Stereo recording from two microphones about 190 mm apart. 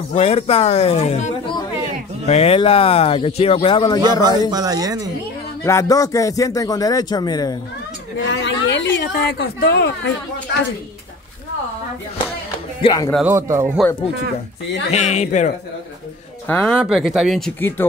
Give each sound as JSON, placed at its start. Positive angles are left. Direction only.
{"t": 0.1, "sound": "a man's voice", "side_deg": 35}
{"t": 4.2, "sound": "a man's voice", "side_deg": -20}
{"t": 5.6, "sound": "a man's voice", "side_deg": 15}
{"t": 8.3, "sound": "a woman's voice", "side_deg": 70}
{"t": 12.8, "sound": "a man's voice", "side_deg": 20}
{"t": 13.2, "sound": "speech", "side_deg": -15}
{"t": 14.9, "sound": "speech", "side_deg": 35}
{"t": 16.4, "sound": "speech", "side_deg": 5}
{"t": 17.6, "sound": "speech", "side_deg": 10}